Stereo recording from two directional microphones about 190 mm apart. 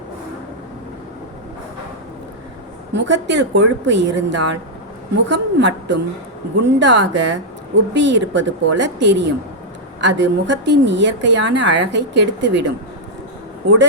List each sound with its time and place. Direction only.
2.9 s a woman's voice: 65° right (ahead or behind)